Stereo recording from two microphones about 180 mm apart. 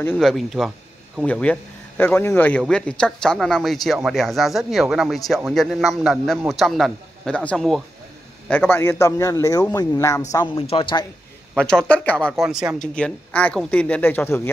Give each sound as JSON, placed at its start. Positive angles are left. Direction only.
{"t": 0.0, "sound": "a man's voice", "side_deg": 5}
{"t": 11.5, "sound": "a man's voice", "side_deg": 5}